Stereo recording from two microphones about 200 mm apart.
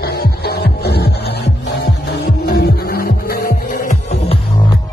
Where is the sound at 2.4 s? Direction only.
50° left (ahead or behind).